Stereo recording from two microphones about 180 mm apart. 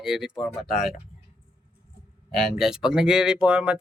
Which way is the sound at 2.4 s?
Centre (ahead or behind).